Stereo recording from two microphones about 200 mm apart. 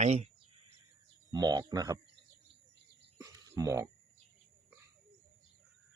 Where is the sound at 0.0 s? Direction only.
35° right (ahead or behind).